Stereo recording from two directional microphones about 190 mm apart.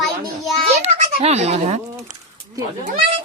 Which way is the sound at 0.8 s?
35° right (ahead or behind).